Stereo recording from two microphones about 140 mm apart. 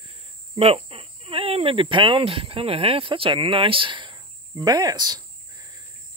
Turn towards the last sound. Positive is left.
turn(degrees=-30)  # may be behind; listen again after turning